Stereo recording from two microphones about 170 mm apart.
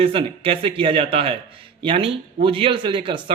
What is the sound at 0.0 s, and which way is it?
A man's voice, 35° right (ahead or behind).